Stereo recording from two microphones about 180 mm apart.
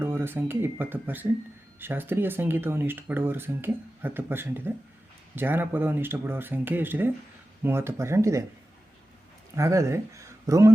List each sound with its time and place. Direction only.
0.0 s speech: 15° right (ahead or behind)
9.6 s speech: 15° right (ahead or behind)